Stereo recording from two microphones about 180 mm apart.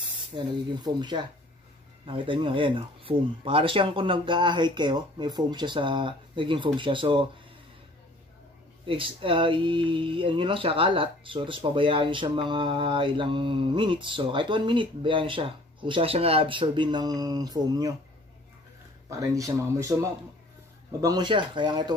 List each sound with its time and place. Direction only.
0.3 s speech: 30° right (ahead or behind)
8.8 s speech: 30° right (ahead or behind)
19.0 s speech: 20° right (ahead or behind)